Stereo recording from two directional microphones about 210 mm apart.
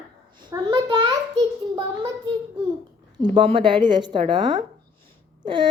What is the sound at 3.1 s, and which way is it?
Speech, 20° right (ahead or behind).